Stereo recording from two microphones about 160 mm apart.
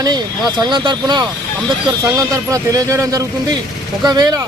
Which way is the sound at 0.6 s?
25° right (ahead or behind).